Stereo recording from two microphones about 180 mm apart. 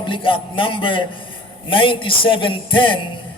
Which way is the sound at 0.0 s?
30° left (ahead or behind).